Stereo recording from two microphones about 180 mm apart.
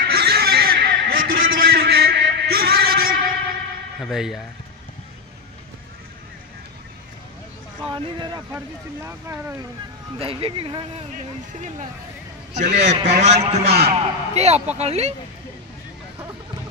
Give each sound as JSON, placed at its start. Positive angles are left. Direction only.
{"t": 0.0, "sound": "a sound", "side_deg": -60}
{"t": 1.5, "sound": "music", "side_deg": -55}
{"t": 4.0, "sound": "speech", "side_deg": 0}
{"t": 7.8, "sound": "speech", "side_deg": -25}
{"t": 8.4, "sound": "speech", "side_deg": -10}
{"t": 10.1, "sound": "a man's voice", "side_deg": -30}
{"t": 12.7, "sound": "a man's voice", "side_deg": -40}